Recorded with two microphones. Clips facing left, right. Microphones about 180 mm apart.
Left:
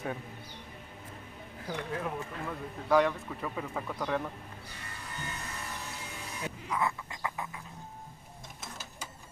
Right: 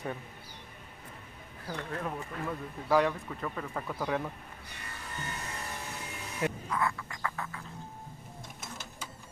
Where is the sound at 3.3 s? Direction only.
5° left (ahead or behind).